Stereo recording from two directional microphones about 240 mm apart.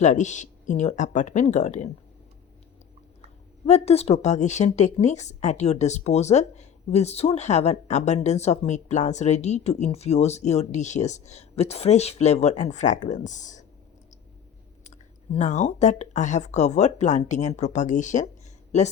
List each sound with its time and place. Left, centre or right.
0.0 s speech: left
3.7 s a woman's voice: left
14.8 s a woman's voice: left